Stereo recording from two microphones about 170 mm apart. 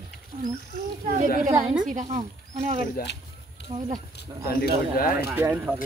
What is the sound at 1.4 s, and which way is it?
A woman's voice, 50° right (ahead or behind).